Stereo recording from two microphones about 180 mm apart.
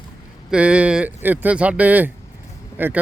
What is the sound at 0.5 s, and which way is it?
Speech, 5° right (ahead or behind).